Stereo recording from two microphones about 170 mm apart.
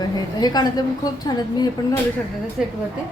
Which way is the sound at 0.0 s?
25° left (ahead or behind).